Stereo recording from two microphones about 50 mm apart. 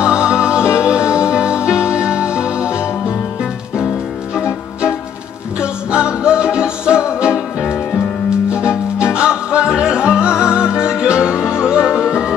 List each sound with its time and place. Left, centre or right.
0.0 s music: centre
5.6 s music: centre
8.5 s music: right